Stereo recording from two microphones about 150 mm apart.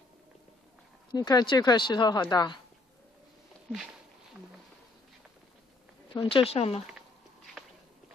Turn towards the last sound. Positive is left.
turn(degrees=40)  # may be behind; listen again after turning